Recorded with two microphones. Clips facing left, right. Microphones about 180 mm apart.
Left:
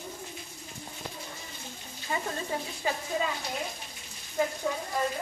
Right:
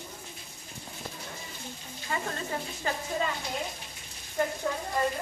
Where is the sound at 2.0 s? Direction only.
10° left (ahead or behind).